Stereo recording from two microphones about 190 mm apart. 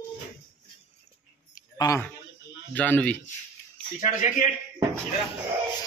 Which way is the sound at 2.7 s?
10° left (ahead or behind).